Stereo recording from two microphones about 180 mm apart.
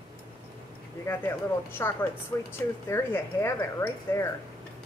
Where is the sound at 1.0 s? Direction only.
15° left (ahead or behind).